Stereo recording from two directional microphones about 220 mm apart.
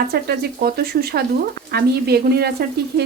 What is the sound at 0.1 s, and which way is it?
Speech, 45° right (ahead or behind).